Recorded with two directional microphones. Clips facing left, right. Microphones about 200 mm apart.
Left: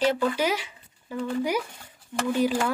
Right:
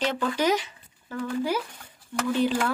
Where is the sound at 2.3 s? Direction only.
10° left (ahead or behind).